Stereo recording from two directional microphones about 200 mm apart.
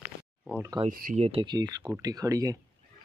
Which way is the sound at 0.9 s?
45° right (ahead or behind).